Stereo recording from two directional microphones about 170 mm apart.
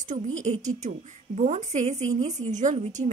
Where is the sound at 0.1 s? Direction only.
45° right (ahead or behind).